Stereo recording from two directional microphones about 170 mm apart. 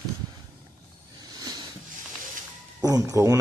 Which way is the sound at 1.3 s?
25° right (ahead or behind).